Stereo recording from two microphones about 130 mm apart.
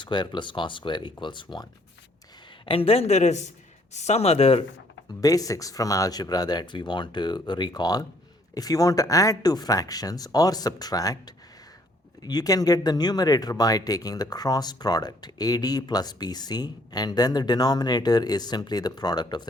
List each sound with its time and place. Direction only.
0.0 s speech: 35° left (ahead or behind)
2.6 s speech: 45° left (ahead or behind)
5.0 s speech: 30° left (ahead or behind)